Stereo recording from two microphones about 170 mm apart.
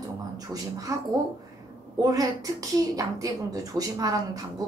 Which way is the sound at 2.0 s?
20° right (ahead or behind).